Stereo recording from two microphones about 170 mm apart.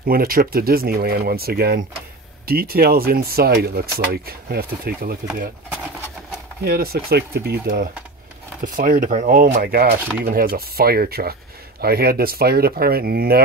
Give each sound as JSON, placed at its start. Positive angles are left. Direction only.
{"t": 0.0, "sound": "speech", "side_deg": -55}
{"t": 6.6, "sound": "speech", "side_deg": -65}
{"t": 7.6, "sound": "speech", "side_deg": -55}